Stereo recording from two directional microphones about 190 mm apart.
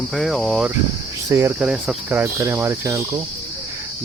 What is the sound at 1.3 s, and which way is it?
Cricket, 10° right (ahead or behind).